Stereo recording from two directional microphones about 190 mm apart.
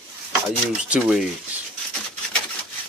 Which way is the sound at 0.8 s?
5° right (ahead or behind).